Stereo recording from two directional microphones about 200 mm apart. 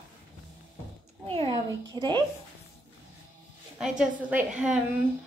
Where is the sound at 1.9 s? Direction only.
20° right (ahead or behind).